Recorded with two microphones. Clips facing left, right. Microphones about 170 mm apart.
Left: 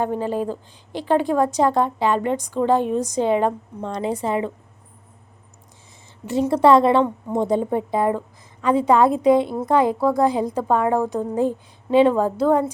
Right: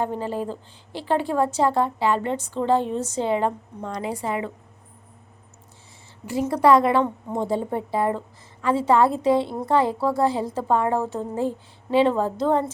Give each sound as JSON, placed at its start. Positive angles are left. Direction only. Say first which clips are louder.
{"t": 0.0, "sound": "a woman's voice", "louder": "left 4 dB", "side_deg": 15}
{"t": 6.2, "sound": "a woman's voice", "louder": "left 3 dB", "side_deg": 25}